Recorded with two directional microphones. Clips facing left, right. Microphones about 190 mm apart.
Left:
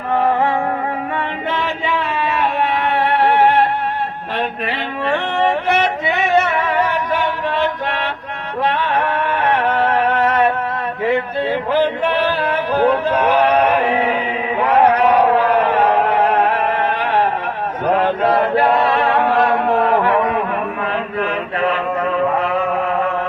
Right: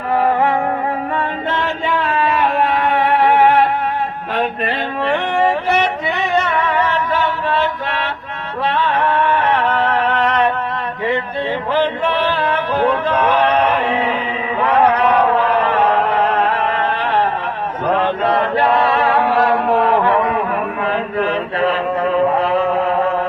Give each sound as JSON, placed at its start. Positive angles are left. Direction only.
{"t": 1.6, "sound": "a sound", "side_deg": -50}
{"t": 6.1, "sound": "singing", "side_deg": 0}
{"t": 8.7, "sound": "music", "side_deg": 10}
{"t": 11.4, "sound": "music", "side_deg": 10}
{"t": 14.6, "sound": "chant", "side_deg": 10}
{"t": 19.2, "sound": "music", "side_deg": 20}
{"t": 19.5, "sound": "a sound", "side_deg": 0}
{"t": 20.9, "sound": "chant", "side_deg": -35}